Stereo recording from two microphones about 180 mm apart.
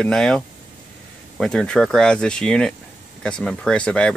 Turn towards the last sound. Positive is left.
turn(degrees=5)  # may be behind; listen again after turning